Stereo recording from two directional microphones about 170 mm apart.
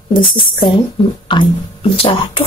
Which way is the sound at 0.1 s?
30° left (ahead or behind).